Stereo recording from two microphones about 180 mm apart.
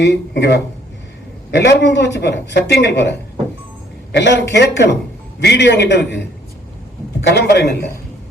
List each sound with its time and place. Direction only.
0.0 s speech: 75° left (ahead or behind)
7.3 s speech: 70° left (ahead or behind)